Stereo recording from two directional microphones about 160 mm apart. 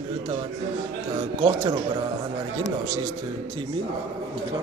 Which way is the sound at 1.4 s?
35° right (ahead or behind).